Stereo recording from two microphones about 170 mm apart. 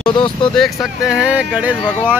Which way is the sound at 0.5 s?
Centre (ahead or behind).